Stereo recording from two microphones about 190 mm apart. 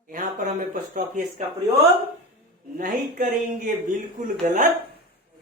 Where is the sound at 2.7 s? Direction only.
45° right (ahead or behind).